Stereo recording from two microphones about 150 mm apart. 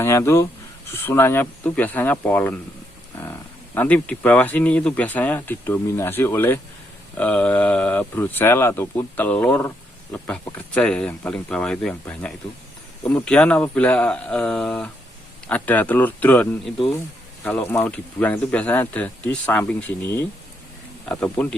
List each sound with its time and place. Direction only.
0.0 s speech: 15° left (ahead or behind)
3.8 s speech: 10° left (ahead or behind)
21.1 s speech: 10° left (ahead or behind)